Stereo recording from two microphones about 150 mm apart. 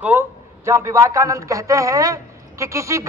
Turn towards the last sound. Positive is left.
turn(degrees=-20)  # may be behind; listen again after turning